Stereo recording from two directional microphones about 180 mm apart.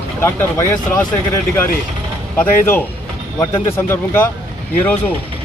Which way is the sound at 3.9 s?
10° left (ahead or behind).